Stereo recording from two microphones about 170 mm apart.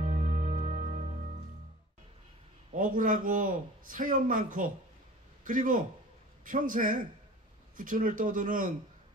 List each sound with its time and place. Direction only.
0.0 s music: 50° right (ahead or behind)
2.7 s a man's voice: 50° right (ahead or behind)